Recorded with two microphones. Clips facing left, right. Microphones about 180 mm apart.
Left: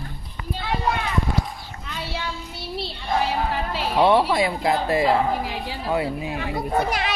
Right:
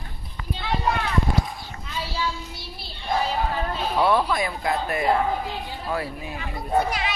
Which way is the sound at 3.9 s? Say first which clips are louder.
Left 4 dB; 25° left (ahead or behind).